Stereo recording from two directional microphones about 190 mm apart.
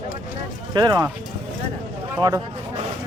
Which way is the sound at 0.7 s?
20° right (ahead or behind).